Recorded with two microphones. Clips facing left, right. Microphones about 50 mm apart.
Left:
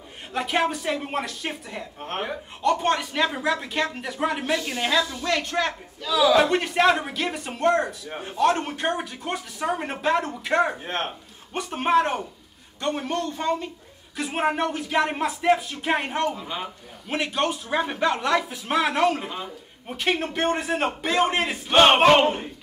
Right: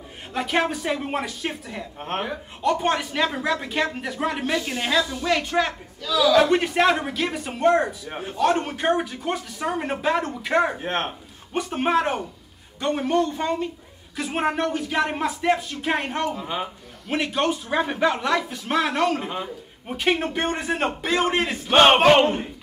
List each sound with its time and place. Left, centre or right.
0.3 s a woman's voice: centre
6.1 s a man's voice: centre
6.5 s a woman's voice: centre
10.8 s speech: right
11.5 s a woman's voice: centre